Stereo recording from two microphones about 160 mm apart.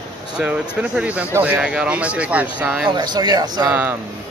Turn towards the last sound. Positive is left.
turn(degrees=-10)  # may be behind; listen again after turning